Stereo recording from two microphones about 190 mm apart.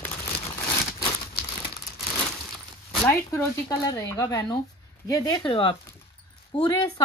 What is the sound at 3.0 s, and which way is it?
Speech, 15° left (ahead or behind).